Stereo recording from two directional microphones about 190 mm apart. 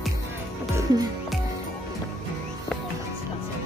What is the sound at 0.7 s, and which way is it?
Music, 20° right (ahead or behind).